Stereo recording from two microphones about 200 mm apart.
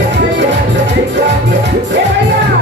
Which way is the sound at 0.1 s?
60° right (ahead or behind).